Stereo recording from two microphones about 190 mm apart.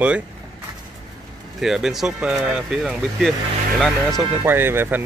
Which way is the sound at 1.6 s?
Centre (ahead or behind).